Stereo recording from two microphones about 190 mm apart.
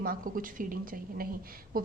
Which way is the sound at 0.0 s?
50° right (ahead or behind).